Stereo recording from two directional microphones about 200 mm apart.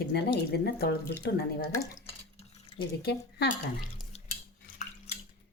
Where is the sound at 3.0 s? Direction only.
55° left (ahead or behind).